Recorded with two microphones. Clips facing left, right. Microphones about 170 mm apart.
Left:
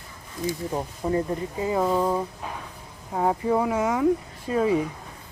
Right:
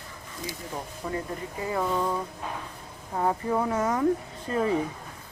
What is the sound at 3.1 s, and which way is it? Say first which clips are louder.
Speech: left 3 dB; 10° left (ahead or behind).